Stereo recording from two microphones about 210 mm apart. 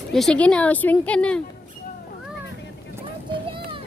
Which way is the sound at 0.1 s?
5° left (ahead or behind).